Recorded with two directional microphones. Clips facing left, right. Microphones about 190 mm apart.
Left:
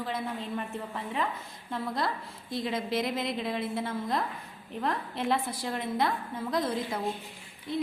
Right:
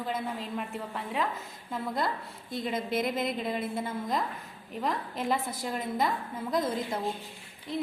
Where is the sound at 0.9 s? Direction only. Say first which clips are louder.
Right 1 dB; centre (ahead or behind).